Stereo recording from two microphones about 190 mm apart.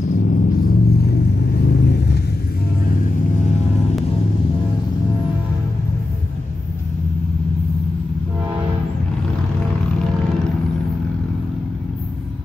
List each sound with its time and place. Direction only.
0.0 s vehicle: 40° left (ahead or behind); by 2.1 s 60° left (ahead or behind)